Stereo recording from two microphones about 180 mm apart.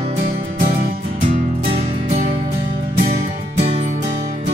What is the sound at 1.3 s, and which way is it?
Music, 35° right (ahead or behind).